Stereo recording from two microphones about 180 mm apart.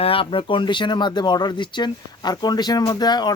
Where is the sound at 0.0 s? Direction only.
30° left (ahead or behind).